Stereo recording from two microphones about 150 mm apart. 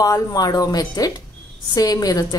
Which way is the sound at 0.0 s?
25° left (ahead or behind).